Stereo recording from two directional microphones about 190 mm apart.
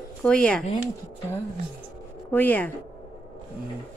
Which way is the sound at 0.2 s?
5° left (ahead or behind).